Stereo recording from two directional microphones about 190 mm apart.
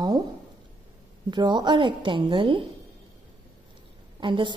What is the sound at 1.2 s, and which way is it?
A woman's voice, 20° right (ahead or behind).